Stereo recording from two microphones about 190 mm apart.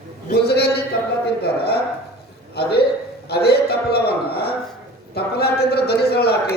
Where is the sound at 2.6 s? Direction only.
60° left (ahead or behind).